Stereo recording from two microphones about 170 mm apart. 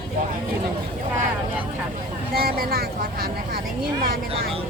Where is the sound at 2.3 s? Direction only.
65° right (ahead or behind).